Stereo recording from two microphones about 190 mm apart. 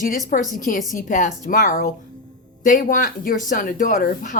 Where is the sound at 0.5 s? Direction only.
45° left (ahead or behind).